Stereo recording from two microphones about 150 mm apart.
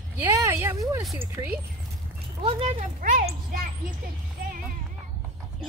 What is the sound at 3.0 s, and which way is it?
Speech, 65° right (ahead or behind).